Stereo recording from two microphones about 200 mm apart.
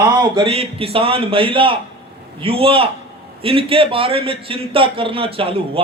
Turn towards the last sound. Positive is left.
turn(degrees=-25)  # may be behind; listen again after turning